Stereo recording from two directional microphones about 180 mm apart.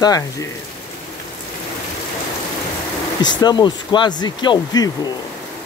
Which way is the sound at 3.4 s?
25° left (ahead or behind).